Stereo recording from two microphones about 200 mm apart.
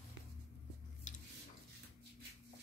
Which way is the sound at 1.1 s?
40° left (ahead or behind).